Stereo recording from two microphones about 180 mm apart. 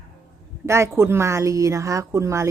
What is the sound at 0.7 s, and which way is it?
A woman's voice, 15° right (ahead or behind).